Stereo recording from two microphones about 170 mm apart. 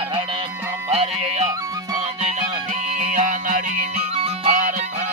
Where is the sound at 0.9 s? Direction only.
35° right (ahead or behind).